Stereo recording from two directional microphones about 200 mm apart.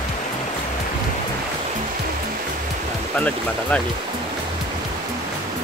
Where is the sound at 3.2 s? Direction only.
5° left (ahead or behind).